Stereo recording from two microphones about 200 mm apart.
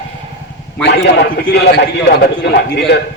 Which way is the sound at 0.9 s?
55° left (ahead or behind).